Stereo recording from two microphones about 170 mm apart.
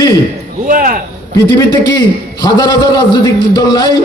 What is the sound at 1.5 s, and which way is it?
A man's voice, 15° left (ahead or behind).